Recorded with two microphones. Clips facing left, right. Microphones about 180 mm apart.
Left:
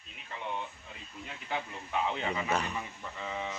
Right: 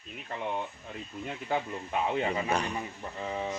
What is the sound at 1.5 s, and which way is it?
Speech, 45° right (ahead or behind).